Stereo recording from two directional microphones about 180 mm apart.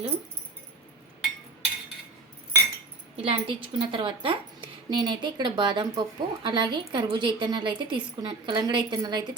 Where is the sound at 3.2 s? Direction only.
30° right (ahead or behind).